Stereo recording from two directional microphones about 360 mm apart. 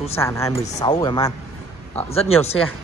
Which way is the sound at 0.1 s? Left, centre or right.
Centre.